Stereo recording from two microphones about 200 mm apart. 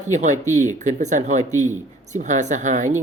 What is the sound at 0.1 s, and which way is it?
Speech, 35° right (ahead or behind).